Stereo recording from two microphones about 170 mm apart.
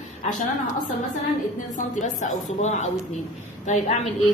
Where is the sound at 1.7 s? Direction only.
45° left (ahead or behind).